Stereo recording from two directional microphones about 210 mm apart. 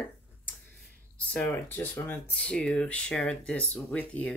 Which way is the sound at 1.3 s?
5° left (ahead or behind).